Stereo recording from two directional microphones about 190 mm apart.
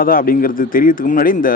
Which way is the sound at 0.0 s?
45° left (ahead or behind).